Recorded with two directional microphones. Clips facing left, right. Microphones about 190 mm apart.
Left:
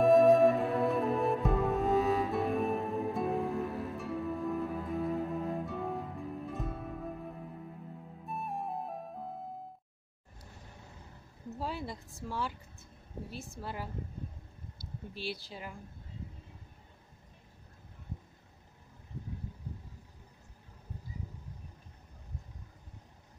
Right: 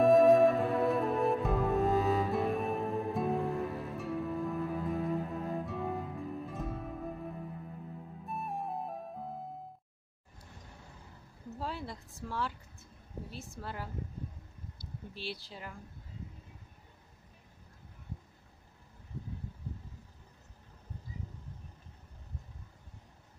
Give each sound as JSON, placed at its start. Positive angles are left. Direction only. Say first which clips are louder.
{"t": 0.0, "sound": "music", "louder": "even", "side_deg": 0}
{"t": 8.3, "sound": "flute", "louder": "even", "side_deg": 0}
{"t": 11.6, "sound": "a woman's voice", "louder": "left 2 dB", "side_deg": 10}
{"t": 15.1, "sound": "a woman's voice", "louder": "left 3 dB", "side_deg": 10}